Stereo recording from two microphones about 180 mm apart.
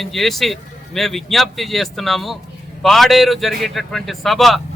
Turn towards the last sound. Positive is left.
turn(degrees=0)  # may be behind; listen again after turning